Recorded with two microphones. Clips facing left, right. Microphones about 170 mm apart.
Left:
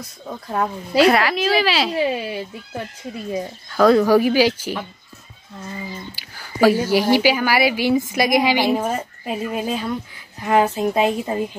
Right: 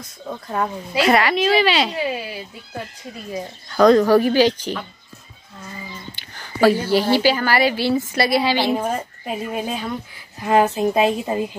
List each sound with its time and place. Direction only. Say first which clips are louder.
0.3 s speech: even; 5° left (ahead or behind)
3.7 s a woman's voice: right 1 dB; 5° left (ahead or behind)
6.1 s a woman's voice: left 2 dB; 5° left (ahead or behind)
10.4 s speech: right 1 dB; 10° right (ahead or behind)